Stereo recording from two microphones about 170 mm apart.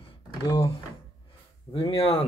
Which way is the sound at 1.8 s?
35° left (ahead or behind).